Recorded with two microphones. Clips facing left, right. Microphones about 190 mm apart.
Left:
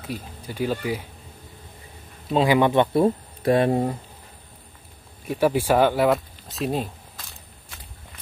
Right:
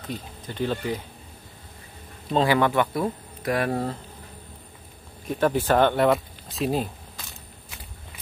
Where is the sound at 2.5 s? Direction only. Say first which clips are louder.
Left 5 dB; 20° left (ahead or behind).